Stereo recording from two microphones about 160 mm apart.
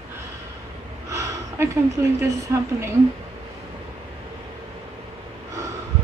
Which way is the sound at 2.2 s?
15° right (ahead or behind).